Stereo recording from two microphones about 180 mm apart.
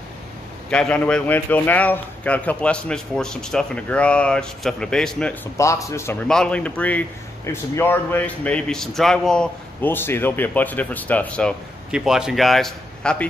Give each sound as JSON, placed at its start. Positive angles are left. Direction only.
{"t": 0.7, "sound": "a man's voice", "side_deg": 5}
{"t": 5.6, "sound": "a man's voice", "side_deg": 15}
{"t": 6.2, "sound": "a man's voice", "side_deg": 5}